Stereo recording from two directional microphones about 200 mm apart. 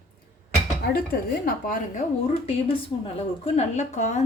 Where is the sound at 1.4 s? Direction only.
45° left (ahead or behind).